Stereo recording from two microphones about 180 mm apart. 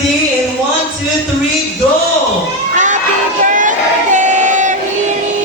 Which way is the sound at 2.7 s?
45° right (ahead or behind).